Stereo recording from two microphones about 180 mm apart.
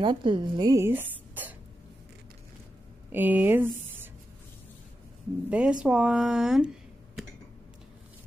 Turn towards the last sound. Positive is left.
turn(degrees=-5)  # may be behind; listen again after turning